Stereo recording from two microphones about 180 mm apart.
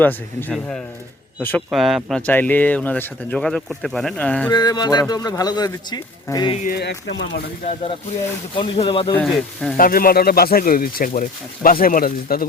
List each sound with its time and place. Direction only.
0.0 s speech: 10° left (ahead or behind)
1.7 s speech: centre (ahead or behind)
4.5 s speech: 20° left (ahead or behind)
6.7 s speech: 65° left (ahead or behind)
8.5 s speech: 30° left (ahead or behind)
9.1 s speech: 5° left (ahead or behind)
9.7 s speech: 55° left (ahead or behind)